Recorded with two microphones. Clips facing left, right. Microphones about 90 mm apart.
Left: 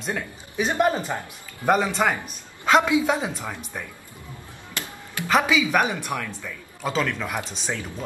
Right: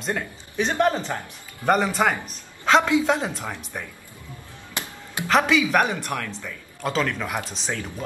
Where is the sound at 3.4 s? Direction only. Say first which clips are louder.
Even; 10° right (ahead or behind).